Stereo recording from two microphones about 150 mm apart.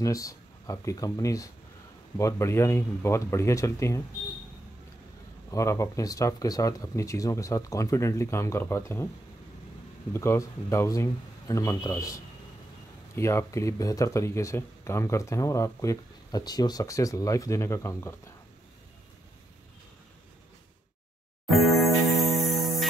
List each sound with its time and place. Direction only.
0.0 s speech: 20° left (ahead or behind)
5.5 s speech: 20° left (ahead or behind)
10.1 s speech: 20° left (ahead or behind)
21.5 s music: centre (ahead or behind)